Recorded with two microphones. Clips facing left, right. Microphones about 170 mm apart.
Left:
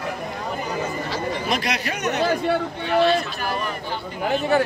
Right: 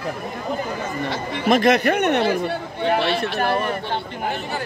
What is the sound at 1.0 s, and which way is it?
Speech, 60° right (ahead or behind).